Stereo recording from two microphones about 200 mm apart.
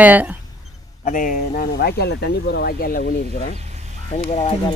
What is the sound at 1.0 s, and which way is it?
Speech, 40° left (ahead or behind).